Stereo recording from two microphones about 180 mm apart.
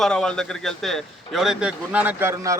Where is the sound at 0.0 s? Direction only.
5° left (ahead or behind).